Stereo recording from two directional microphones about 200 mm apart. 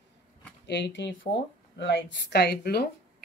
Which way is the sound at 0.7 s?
60° left (ahead or behind).